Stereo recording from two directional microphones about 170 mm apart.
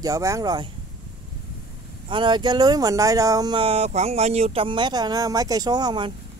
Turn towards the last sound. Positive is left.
turn(degrees=-25)  # may be behind; listen again after turning